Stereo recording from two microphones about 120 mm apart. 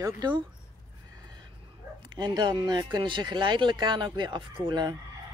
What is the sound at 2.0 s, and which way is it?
Speech, 35° right (ahead or behind).